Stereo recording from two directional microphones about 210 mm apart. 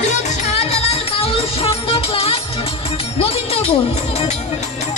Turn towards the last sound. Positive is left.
turn(degrees=30)  # may be behind; listen again after turning